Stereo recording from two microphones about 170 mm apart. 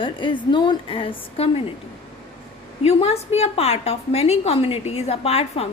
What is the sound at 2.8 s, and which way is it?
A woman's voice, 35° left (ahead or behind).